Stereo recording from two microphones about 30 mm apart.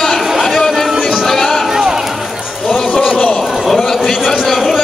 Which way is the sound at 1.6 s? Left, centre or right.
Centre.